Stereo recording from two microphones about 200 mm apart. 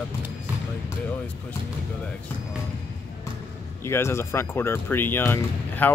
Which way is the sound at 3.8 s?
15° left (ahead or behind).